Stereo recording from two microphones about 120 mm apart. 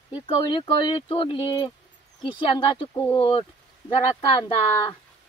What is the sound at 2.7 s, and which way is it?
Speech, 40° left (ahead or behind).